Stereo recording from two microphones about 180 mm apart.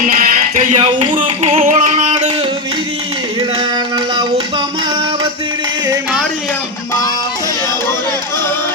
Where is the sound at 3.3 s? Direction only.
25° right (ahead or behind).